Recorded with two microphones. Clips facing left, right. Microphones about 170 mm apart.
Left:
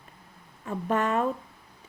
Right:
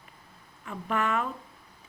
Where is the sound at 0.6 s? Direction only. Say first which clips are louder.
Left 3 dB; 35° left (ahead or behind).